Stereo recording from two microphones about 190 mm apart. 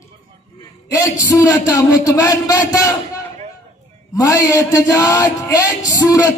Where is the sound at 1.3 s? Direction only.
15° left (ahead or behind).